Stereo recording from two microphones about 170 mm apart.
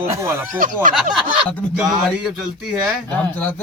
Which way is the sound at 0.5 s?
50° right (ahead or behind).